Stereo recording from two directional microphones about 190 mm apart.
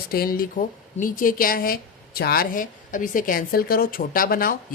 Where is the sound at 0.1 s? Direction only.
50° left (ahead or behind).